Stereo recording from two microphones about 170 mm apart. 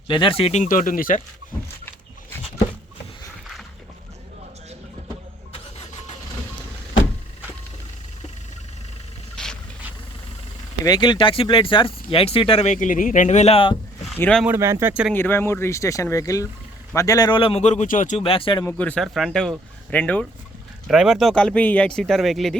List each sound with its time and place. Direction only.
0.1 s speech: 30° left (ahead or behind)
0.6 s speech: 50° left (ahead or behind)
9.3 s vehicle: 5° left (ahead or behind)
10.8 s speech: 25° left (ahead or behind)
14.2 s speech: 5° left (ahead or behind)
14.4 s speech: 15° right (ahead or behind)
15.1 s speech: 15° left (ahead or behind); by 18.2 s 50° left (ahead or behind)
18.2 s speech: 30° left (ahead or behind)
18.6 s speech: 10° left (ahead or behind)
20.8 s speech: centre (ahead or behind)